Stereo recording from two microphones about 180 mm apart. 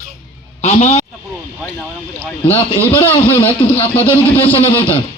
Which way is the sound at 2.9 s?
30° left (ahead or behind).